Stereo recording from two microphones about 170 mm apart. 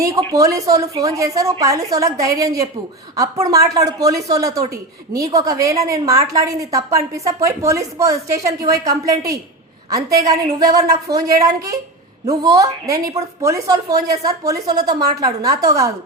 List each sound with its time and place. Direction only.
0.0 s a woman's voice: 20° right (ahead or behind)